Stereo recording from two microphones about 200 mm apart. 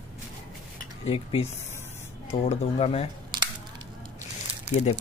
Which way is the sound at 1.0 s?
30° left (ahead or behind).